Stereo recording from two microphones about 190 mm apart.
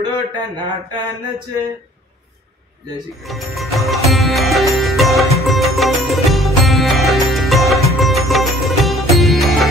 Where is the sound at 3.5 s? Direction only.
Centre (ahead or behind).